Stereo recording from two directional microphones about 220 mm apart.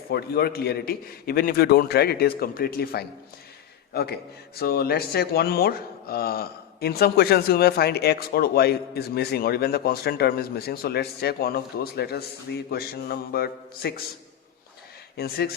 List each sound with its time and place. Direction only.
0.1 s speech: 45° left (ahead or behind)
15.1 s speech: 45° left (ahead or behind)